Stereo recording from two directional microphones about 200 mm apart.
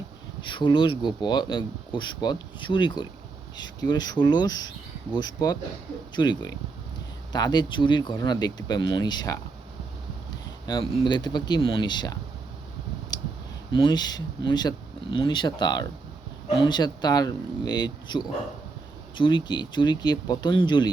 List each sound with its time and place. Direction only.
0.4 s speech: 25° left (ahead or behind)
10.7 s speech: 20° left (ahead or behind)
13.1 s a sound: 20° left (ahead or behind)
13.7 s speech: 20° left (ahead or behind)